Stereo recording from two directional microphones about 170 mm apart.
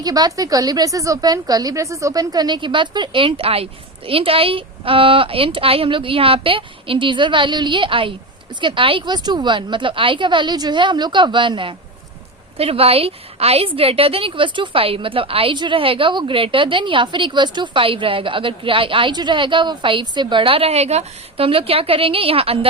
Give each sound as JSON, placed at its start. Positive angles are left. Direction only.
{"t": 0.0, "sound": "a woman's voice", "side_deg": -20}